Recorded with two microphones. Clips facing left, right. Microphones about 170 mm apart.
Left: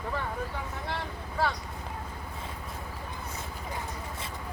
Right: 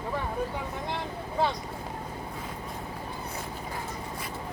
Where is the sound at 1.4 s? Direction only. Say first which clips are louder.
Right 2 dB; 20° right (ahead or behind).